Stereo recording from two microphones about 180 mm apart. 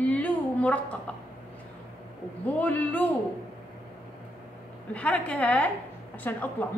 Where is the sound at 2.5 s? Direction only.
10° left (ahead or behind).